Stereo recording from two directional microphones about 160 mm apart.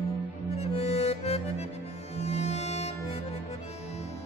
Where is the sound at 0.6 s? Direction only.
40° left (ahead or behind).